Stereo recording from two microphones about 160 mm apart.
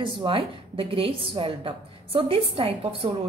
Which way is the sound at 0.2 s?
35° right (ahead or behind).